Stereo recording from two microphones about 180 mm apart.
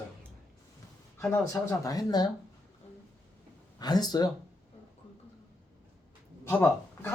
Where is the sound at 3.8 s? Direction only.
20° left (ahead or behind).